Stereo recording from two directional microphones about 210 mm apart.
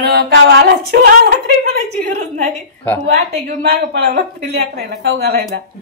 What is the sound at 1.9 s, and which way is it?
Speech, 35° right (ahead or behind).